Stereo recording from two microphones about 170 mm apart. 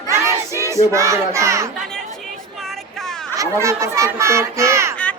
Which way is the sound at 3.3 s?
15° right (ahead or behind).